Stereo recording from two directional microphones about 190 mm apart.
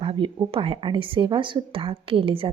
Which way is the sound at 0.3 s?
30° right (ahead or behind).